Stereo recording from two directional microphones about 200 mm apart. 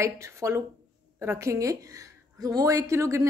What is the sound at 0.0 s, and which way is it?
A woman's voice, 15° right (ahead or behind).